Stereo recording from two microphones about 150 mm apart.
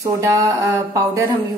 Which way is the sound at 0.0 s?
20° right (ahead or behind).